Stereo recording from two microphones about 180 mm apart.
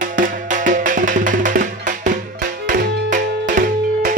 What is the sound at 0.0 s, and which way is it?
Music, 45° right (ahead or behind).